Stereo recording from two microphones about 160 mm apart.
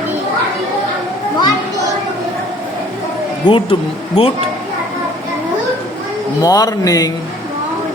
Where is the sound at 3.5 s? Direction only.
35° left (ahead or behind).